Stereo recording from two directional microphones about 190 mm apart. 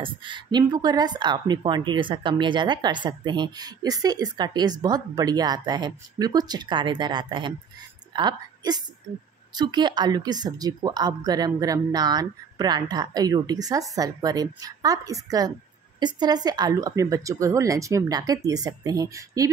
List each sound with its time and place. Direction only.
0.0 s a woman's voice: 25° right (ahead or behind)